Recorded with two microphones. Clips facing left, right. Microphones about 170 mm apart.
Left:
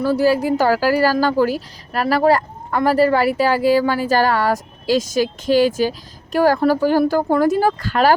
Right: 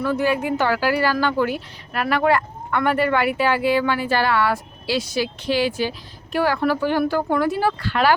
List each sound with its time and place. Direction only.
0.0 s speech: 35° left (ahead or behind)